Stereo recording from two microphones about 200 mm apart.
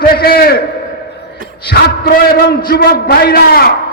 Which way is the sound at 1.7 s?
50° left (ahead or behind).